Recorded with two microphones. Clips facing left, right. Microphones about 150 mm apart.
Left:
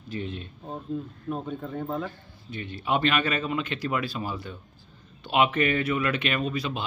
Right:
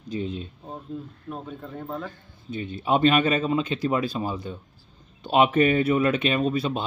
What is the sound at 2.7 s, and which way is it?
Speech, 30° right (ahead or behind).